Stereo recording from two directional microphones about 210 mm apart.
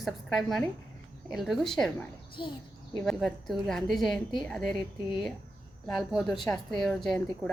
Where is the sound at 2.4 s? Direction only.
20° left (ahead or behind).